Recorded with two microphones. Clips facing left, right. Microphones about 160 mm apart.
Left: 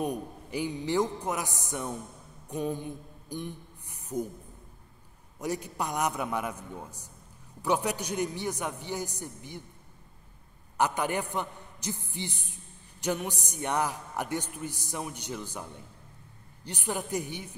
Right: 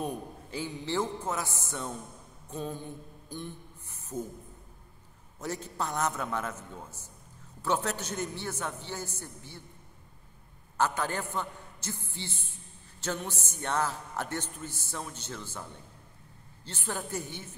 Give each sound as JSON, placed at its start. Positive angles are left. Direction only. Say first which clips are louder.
{"t": 0.0, "sound": "a man's voice", "louder": "left 3 dB", "side_deg": 15}
{"t": 2.5, "sound": "a sound", "louder": "left 5 dB", "side_deg": 15}
{"t": 5.4, "sound": "a man's voice", "louder": "left 2 dB", "side_deg": 15}
{"t": 10.8, "sound": "a man's voice", "louder": "left 2 dB", "side_deg": 15}
{"t": 16.6, "sound": "a man's voice", "louder": "left 3 dB", "side_deg": 15}